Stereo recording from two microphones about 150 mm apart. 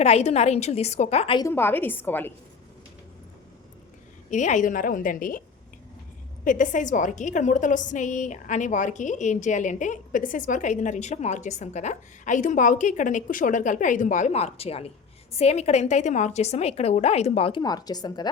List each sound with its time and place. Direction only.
0.0 s a woman's voice: 45° left (ahead or behind)
1.4 s a woman's voice: 15° left (ahead or behind)
4.3 s a woman's voice: 55° left (ahead or behind)
6.4 s a woman's voice: 60° left (ahead or behind); by 17.6 s 40° left (ahead or behind)
17.6 s speech: 25° left (ahead or behind)